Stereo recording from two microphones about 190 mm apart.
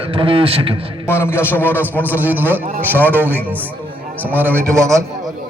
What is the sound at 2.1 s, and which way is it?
Speech, 10° right (ahead or behind).